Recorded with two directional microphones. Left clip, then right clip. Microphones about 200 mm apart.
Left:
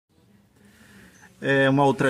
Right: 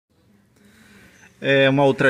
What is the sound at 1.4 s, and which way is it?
Speech, 10° right (ahead or behind).